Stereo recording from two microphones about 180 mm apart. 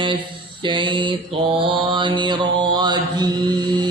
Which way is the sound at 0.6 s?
25° right (ahead or behind).